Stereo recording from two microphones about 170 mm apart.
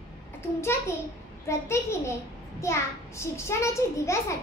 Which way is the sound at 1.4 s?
15° left (ahead or behind).